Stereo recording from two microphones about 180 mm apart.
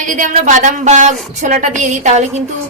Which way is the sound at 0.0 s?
45° right (ahead or behind).